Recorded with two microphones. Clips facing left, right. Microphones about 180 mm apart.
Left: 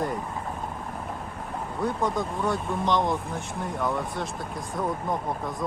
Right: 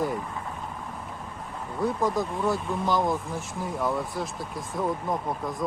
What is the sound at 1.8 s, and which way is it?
Speech, centre (ahead or behind).